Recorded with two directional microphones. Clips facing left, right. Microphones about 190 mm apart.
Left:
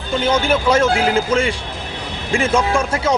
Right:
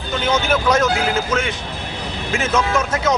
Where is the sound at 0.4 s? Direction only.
30° left (ahead or behind).